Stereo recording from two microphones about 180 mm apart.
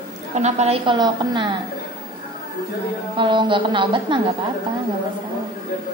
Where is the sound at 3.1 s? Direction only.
25° right (ahead or behind).